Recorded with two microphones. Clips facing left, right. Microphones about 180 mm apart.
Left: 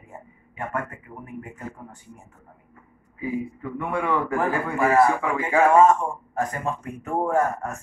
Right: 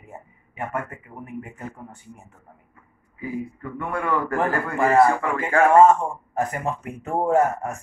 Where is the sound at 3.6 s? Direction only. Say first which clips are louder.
Left 1 dB; 5° left (ahead or behind).